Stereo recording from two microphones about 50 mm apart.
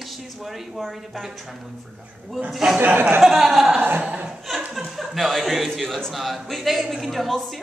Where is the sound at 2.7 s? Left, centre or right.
Right.